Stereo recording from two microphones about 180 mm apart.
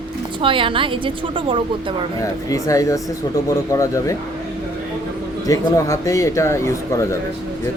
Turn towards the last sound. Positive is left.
turn(degrees=15)  # may be behind; listen again after turning